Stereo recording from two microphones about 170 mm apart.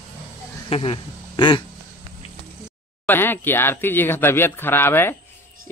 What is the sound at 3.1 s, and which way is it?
Speech, 10° left (ahead or behind).